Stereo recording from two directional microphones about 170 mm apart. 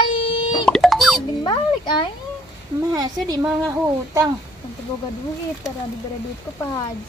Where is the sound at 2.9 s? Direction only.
25° right (ahead or behind).